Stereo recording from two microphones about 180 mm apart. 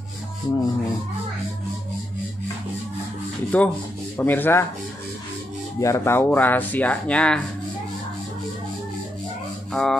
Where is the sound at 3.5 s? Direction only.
10° left (ahead or behind).